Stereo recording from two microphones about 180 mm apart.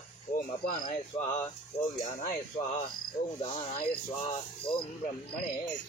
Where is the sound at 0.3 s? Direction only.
50° left (ahead or behind).